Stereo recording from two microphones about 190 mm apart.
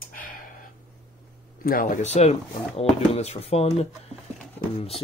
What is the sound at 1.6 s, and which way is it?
Speech, 50° left (ahead or behind).